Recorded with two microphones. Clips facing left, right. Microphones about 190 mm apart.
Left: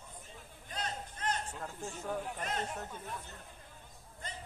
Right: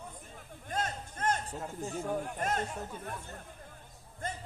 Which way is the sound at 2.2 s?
45° right (ahead or behind).